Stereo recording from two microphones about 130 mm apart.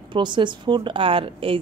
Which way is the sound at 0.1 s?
35° right (ahead or behind).